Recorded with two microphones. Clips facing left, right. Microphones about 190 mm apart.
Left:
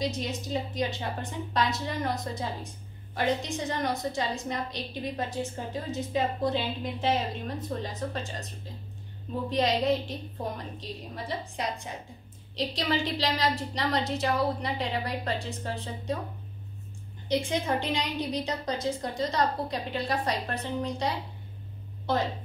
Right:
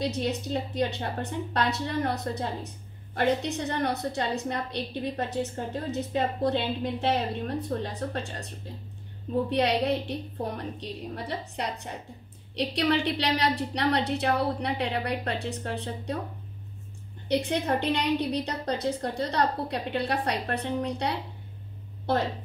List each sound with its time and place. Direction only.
0.0 s a woman's voice: 65° right (ahead or behind)
9.5 s a woman's voice: 65° right (ahead or behind)
17.3 s a woman's voice: 65° right (ahead or behind)